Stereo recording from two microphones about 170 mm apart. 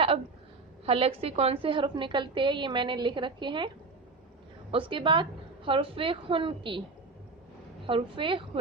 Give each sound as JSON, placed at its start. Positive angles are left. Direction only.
{"t": 0.9, "sound": "a woman's voice", "side_deg": -35}
{"t": 4.7, "sound": "a woman's voice", "side_deg": -30}
{"t": 7.9, "sound": "a woman's voice", "side_deg": -30}